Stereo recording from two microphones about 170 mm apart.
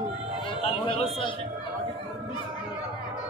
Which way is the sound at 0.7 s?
35° left (ahead or behind).